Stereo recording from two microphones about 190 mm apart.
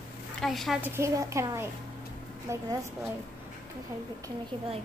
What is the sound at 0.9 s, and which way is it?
A woman's voice, 15° right (ahead or behind).